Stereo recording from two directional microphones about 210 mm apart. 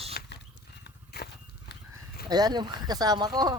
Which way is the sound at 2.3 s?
20° right (ahead or behind).